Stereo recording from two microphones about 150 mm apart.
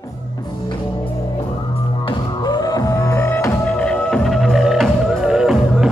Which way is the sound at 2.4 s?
25° left (ahead or behind).